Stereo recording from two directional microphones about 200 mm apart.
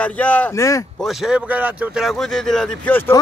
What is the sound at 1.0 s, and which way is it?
Speech, 5° right (ahead or behind).